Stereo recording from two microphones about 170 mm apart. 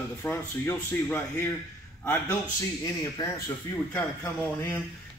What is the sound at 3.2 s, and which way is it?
Speech, 25° left (ahead or behind).